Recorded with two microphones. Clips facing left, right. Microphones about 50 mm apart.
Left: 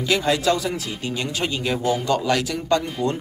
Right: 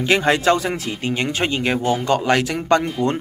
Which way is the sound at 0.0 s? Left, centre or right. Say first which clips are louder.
Right 4 dB; right.